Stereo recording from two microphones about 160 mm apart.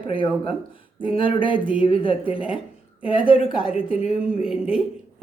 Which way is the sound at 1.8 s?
35° left (ahead or behind).